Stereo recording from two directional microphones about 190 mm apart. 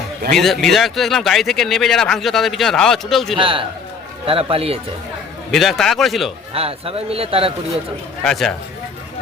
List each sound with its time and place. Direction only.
0.3 s speech: centre (ahead or behind)
3.3 s a man's voice: 25° right (ahead or behind)
5.5 s speech: centre (ahead or behind)
6.5 s a man's voice: 30° right (ahead or behind)
8.2 s speech: centre (ahead or behind)